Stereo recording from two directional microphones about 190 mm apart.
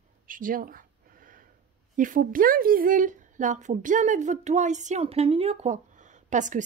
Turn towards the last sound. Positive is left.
turn(degrees=-40)  # may be behind; listen again after turning